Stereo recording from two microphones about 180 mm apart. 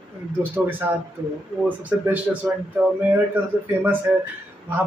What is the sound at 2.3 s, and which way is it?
Speech, 10° right (ahead or behind).